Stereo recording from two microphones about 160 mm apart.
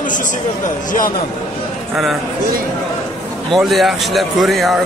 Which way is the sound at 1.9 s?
Centre (ahead or behind).